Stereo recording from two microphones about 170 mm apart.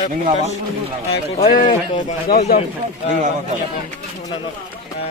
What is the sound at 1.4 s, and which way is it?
Speech, 55° left (ahead or behind).